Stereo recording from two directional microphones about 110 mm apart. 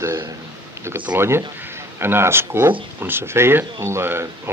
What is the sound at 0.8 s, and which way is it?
Speech, 15° right (ahead or behind).